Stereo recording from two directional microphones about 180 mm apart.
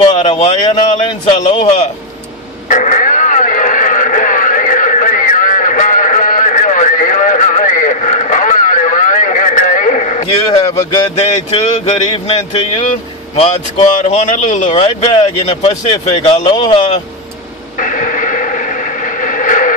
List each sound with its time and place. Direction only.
0.0 s a man's voice: 30° left (ahead or behind)
1.4 s speech: 35° left (ahead or behind)
2.7 s a sound: 45° left (ahead or behind)
10.5 s a man's voice: 25° left (ahead or behind)
13.4 s speech: 40° left (ahead or behind)
17.7 s radio: 45° left (ahead or behind)